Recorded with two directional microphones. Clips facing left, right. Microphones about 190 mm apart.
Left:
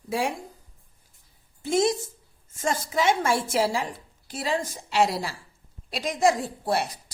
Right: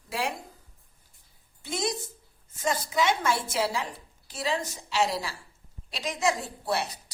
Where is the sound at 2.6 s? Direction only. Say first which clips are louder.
Left 1 dB; 45° left (ahead or behind).